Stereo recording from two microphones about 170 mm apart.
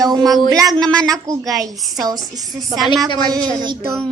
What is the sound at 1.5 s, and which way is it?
Speech, 20° right (ahead or behind).